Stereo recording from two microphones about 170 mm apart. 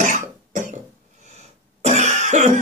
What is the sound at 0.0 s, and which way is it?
Cough, 45° right (ahead or behind).